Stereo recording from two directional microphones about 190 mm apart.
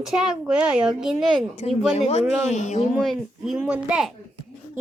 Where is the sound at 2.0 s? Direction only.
35° left (ahead or behind).